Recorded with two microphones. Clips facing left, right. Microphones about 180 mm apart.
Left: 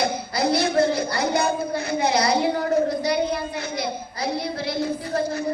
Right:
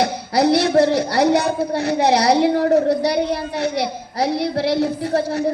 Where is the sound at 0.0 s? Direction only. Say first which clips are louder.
Right 6 dB; 70° right (ahead or behind).